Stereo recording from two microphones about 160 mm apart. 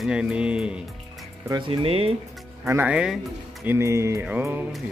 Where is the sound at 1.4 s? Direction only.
30° right (ahead or behind).